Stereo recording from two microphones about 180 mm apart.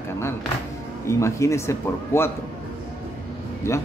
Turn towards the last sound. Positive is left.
turn(degrees=15)  # may be behind; listen again after turning